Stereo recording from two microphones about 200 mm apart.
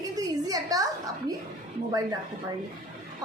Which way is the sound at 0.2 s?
20° right (ahead or behind).